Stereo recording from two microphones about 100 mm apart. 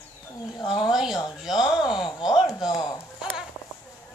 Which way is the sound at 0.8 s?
5° right (ahead or behind).